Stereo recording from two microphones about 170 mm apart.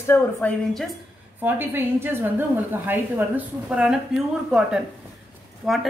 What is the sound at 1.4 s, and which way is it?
A woman's voice, 15° right (ahead or behind).